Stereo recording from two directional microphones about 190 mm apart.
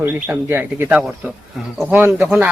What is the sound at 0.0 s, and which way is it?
Speech, 10° right (ahead or behind).